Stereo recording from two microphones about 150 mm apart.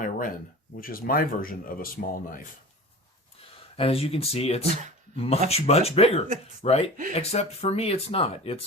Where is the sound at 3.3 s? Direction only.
40° left (ahead or behind).